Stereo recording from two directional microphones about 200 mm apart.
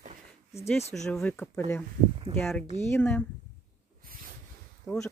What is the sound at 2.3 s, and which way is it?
Speech, 20° right (ahead or behind).